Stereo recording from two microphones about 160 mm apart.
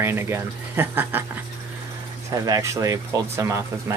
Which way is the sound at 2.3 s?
20° right (ahead or behind).